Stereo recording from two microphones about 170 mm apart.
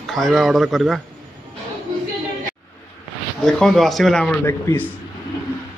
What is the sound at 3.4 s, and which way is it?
A man's voice, centre (ahead or behind).